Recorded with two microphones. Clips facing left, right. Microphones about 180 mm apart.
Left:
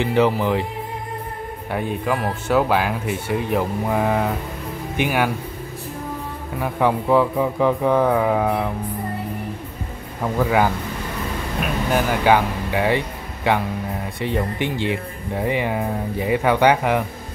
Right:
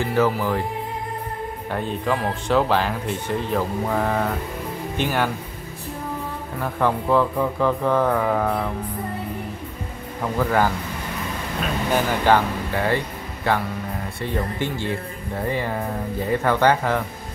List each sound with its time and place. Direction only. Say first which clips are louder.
0.0 s speech: left 2 dB; 20° left (ahead or behind)
1.7 s speech: left 1 dB; 10° left (ahead or behind)
6.6 s speech: left 2 dB; 15° left (ahead or behind)
10.4 s speech: left 2 dB; 10° left (ahead or behind)